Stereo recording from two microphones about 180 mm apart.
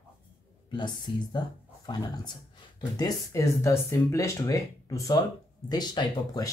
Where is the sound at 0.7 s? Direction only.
25° left (ahead or behind).